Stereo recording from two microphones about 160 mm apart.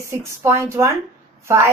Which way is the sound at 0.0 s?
15° right (ahead or behind).